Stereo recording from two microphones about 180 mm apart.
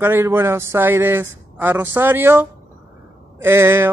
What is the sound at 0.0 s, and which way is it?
Speech, 15° right (ahead or behind).